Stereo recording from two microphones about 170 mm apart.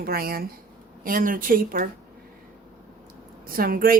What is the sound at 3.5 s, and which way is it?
Speech, 60° right (ahead or behind).